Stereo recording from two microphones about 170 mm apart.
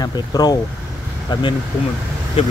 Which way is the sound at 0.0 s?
20° left (ahead or behind).